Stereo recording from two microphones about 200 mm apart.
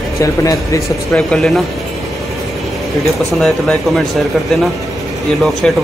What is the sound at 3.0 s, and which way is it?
Speech, centre (ahead or behind).